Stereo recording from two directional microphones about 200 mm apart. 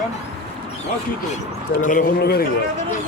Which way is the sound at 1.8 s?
45° left (ahead or behind).